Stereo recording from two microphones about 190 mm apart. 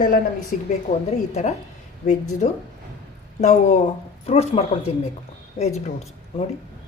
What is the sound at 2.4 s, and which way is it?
Speech, 40° left (ahead or behind).